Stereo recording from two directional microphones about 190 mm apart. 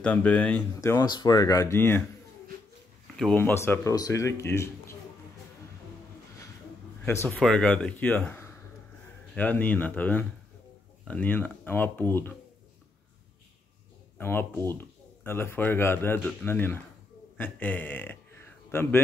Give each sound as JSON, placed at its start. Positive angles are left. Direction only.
{"t": 0.0, "sound": "speech", "side_deg": 10}
{"t": 3.2, "sound": "speech", "side_deg": 5}
{"t": 7.2, "sound": "speech", "side_deg": 5}
{"t": 14.1, "sound": "speech", "side_deg": 10}